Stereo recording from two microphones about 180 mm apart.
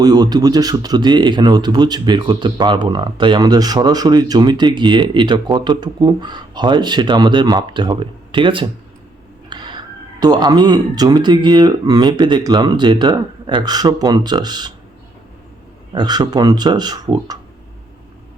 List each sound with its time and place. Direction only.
0.0 s speech: 20° right (ahead or behind)
16.0 s speech: 25° right (ahead or behind)